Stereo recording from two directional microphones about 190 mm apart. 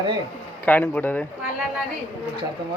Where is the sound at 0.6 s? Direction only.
10° left (ahead or behind).